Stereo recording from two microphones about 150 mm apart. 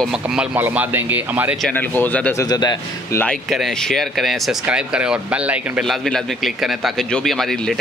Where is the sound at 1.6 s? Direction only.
10° left (ahead or behind).